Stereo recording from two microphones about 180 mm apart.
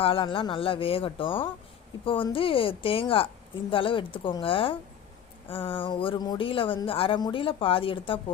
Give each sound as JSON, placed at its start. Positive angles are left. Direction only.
{"t": 0.0, "sound": "speech", "side_deg": 30}